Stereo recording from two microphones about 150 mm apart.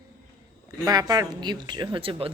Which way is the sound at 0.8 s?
25° right (ahead or behind).